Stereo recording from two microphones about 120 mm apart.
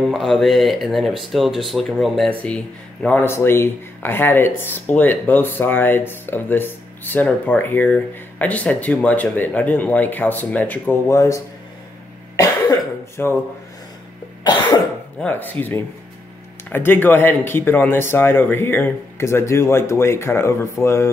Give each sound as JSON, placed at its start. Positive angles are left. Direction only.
{"t": 0.1, "sound": "speech", "side_deg": 0}
{"t": 12.4, "sound": "cough", "side_deg": 30}
{"t": 14.4, "sound": "cough", "side_deg": 35}
{"t": 15.1, "sound": "speech", "side_deg": 15}